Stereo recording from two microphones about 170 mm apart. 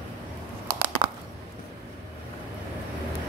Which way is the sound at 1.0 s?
20° right (ahead or behind).